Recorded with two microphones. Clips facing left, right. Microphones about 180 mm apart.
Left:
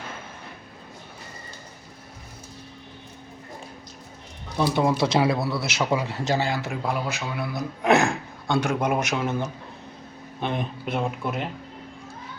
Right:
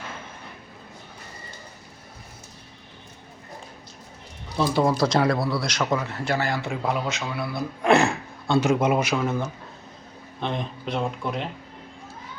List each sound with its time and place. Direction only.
4.6 s speech: 5° left (ahead or behind)
6.6 s speech: centre (ahead or behind)
7.3 s speech: 15° left (ahead or behind)
8.5 s speech: 5° right (ahead or behind)